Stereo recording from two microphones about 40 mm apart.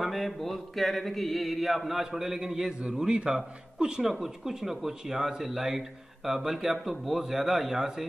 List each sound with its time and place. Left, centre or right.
0.0 s mantra: centre
2.0 s speech: centre
3.1 s a man's voice: right